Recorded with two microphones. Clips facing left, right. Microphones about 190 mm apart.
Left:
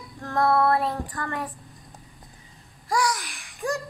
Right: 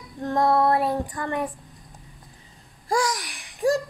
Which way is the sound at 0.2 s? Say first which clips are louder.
Right 1 dB; 20° right (ahead or behind).